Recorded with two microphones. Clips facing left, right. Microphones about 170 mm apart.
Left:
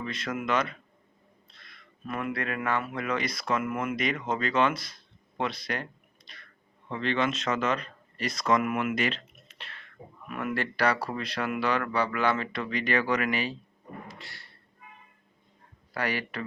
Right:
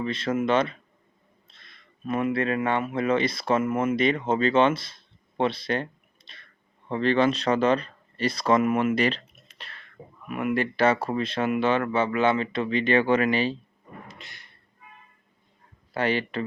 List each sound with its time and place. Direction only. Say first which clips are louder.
0.0 s speech: right 7 dB; 30° right (ahead or behind)
6.8 s speech: right 6 dB; 35° right (ahead or behind)
10.2 s speech: right 6 dB; 15° right (ahead or behind)
14.1 s a sound: left 1 dB; 20° right (ahead or behind)
16.0 s speech: right 6 dB; 25° right (ahead or behind)